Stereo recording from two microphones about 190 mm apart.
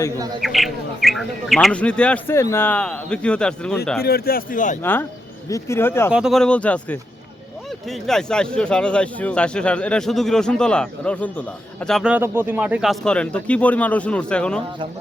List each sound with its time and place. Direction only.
0.4 s speech: centre (ahead or behind)
4.0 s speech: 55° left (ahead or behind)
4.8 s speech: 10° left (ahead or behind)
6.1 s speech: 5° right (ahead or behind)